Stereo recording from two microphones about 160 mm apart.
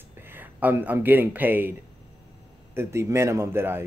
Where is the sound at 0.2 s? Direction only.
10° right (ahead or behind).